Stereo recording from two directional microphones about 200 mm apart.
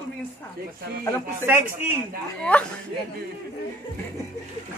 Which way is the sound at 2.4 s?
5° left (ahead or behind).